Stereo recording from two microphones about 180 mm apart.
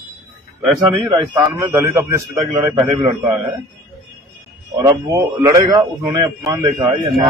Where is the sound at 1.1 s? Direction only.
25° right (ahead or behind).